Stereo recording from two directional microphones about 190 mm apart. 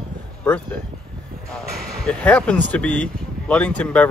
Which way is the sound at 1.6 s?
5° left (ahead or behind).